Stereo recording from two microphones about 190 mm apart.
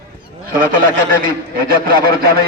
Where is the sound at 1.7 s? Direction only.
50° right (ahead or behind).